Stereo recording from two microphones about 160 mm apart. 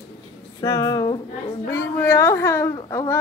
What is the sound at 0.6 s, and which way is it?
A woman's voice, 20° left (ahead or behind).